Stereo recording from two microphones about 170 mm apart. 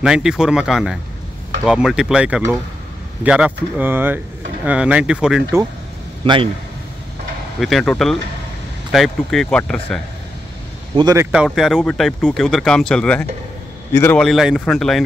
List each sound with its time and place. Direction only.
0.0 s speech: 5° right (ahead or behind)
6.2 s a man's voice: 30° right (ahead or behind)
7.6 s speech: 5° left (ahead or behind)
11.0 s a man's voice: 20° right (ahead or behind)
11.3 s a man's voice: centre (ahead or behind)
14.2 s speech: centre (ahead or behind)